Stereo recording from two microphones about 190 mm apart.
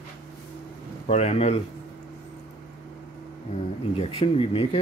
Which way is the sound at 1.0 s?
30° left (ahead or behind).